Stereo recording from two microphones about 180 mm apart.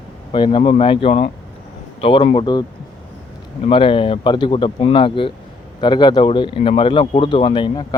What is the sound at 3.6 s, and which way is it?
Speech, 30° left (ahead or behind).